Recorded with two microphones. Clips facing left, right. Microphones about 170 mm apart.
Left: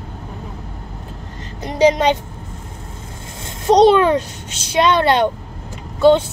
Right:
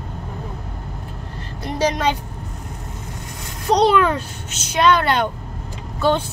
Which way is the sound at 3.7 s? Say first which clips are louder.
Left 5 dB; 25° left (ahead or behind).